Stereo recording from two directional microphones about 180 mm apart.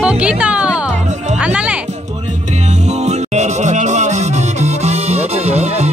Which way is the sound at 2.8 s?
40° right (ahead or behind).